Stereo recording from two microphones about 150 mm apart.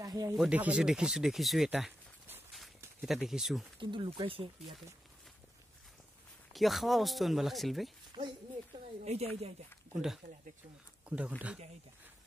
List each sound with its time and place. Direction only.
0.0 s speech: 25° right (ahead or behind)
0.4 s speech: 10° right (ahead or behind)
3.8 s speech: 35° right (ahead or behind)
6.5 s speech: centre (ahead or behind)
8.7 s speech: 45° right (ahead or behind)
10.2 s speech: 65° right (ahead or behind)
11.1 s speech: 10° right (ahead or behind)